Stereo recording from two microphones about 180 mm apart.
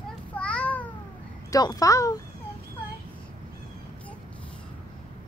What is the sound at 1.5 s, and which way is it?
Speech, 20° left (ahead or behind).